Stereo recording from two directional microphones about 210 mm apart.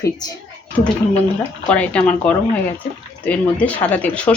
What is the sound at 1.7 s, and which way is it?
Speech, 5° left (ahead or behind).